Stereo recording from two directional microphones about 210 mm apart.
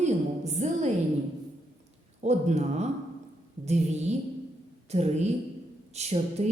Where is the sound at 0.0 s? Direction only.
30° right (ahead or behind).